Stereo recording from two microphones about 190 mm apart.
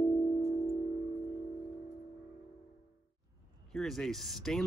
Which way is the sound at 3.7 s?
Centre (ahead or behind).